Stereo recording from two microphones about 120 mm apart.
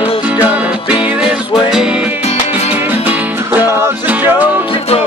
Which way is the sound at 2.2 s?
60° left (ahead or behind).